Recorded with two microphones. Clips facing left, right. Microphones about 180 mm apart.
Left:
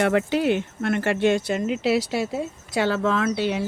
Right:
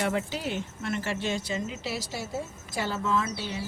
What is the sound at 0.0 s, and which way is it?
Speech, 65° left (ahead or behind).